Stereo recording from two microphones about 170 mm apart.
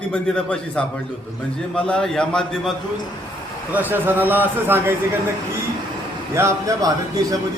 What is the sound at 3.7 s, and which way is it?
A man's voice, 10° right (ahead or behind).